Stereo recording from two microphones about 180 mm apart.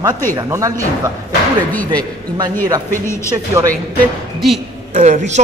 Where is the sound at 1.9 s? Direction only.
20° right (ahead or behind).